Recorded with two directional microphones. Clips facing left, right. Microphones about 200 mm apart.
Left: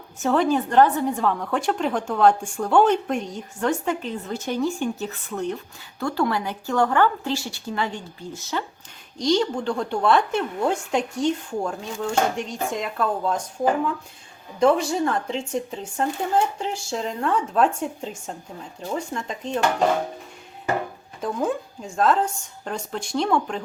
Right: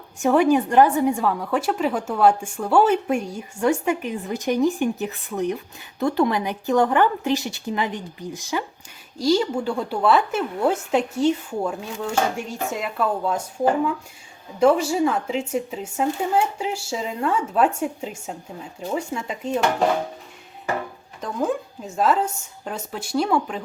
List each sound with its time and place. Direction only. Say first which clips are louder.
0.2 s a woman's voice: right 3 dB; 15° right (ahead or behind)
21.2 s speech: even; centre (ahead or behind)